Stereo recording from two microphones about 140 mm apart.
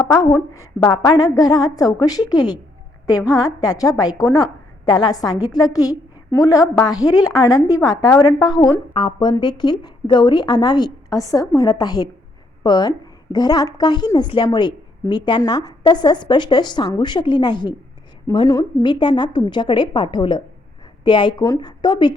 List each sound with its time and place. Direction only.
0.1 s a woman's voice: 25° left (ahead or behind)